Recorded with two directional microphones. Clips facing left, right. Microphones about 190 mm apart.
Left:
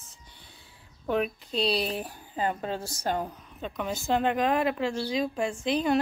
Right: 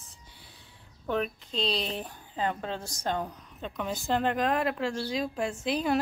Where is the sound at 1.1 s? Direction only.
10° left (ahead or behind).